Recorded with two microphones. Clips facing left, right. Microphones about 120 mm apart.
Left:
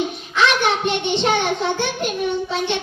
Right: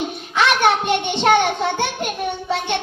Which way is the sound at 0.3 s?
55° right (ahead or behind).